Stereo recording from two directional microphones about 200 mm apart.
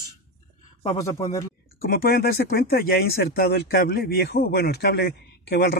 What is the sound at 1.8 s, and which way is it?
Speech, 50° left (ahead or behind).